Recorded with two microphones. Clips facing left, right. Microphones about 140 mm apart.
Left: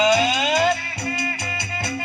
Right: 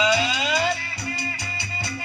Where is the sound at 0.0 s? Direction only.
50° left (ahead or behind).